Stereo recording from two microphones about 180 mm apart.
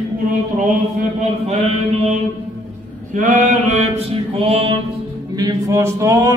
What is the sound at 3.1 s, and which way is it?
Mantra, 45° right (ahead or behind).